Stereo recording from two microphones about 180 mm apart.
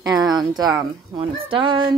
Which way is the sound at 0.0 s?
20° right (ahead or behind).